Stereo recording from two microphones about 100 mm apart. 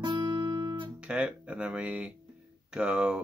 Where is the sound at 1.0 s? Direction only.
10° right (ahead or behind).